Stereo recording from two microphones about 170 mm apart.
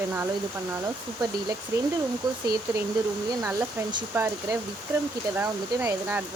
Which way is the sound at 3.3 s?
25° right (ahead or behind).